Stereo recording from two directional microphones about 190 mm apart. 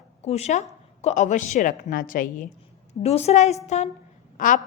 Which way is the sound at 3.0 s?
35° left (ahead or behind).